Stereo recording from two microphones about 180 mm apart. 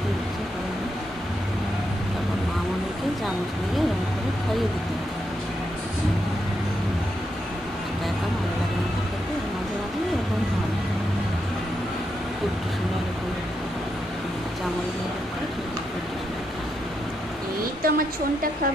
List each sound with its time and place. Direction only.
17.8 s a woman's voice: 55° right (ahead or behind)